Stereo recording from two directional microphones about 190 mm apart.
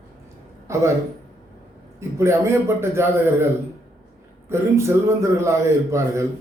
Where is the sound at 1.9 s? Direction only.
15° right (ahead or behind).